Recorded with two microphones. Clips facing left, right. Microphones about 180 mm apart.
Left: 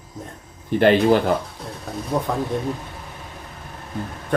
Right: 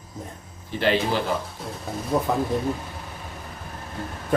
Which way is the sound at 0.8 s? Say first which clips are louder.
Left 7 dB; 50° left (ahead or behind).